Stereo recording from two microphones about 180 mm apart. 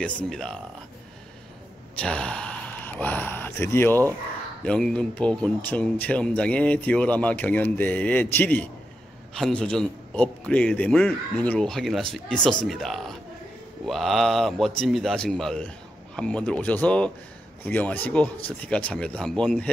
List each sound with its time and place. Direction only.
0.0 s a man's voice: 5° left (ahead or behind)
2.0 s a man's voice: 5° left (ahead or behind)